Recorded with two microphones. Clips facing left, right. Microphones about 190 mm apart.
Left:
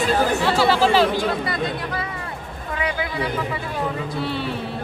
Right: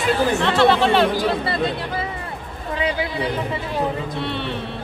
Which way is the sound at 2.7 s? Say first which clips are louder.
Right 2 dB; 25° right (ahead or behind).